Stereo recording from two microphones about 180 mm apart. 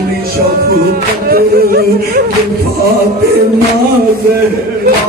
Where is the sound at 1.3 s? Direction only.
55° right (ahead or behind).